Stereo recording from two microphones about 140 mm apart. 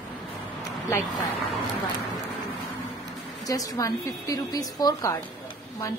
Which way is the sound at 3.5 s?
25° left (ahead or behind).